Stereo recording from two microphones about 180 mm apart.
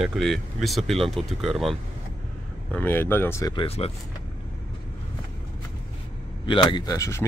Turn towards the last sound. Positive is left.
turn(degrees=20)  # may be behind; listen again after turning